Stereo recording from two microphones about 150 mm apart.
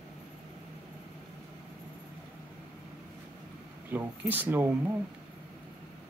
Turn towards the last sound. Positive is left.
turn(degrees=-10)  # may be behind; listen again after turning